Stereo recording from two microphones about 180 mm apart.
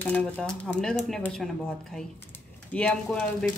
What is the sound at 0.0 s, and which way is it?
Speech, 5° left (ahead or behind).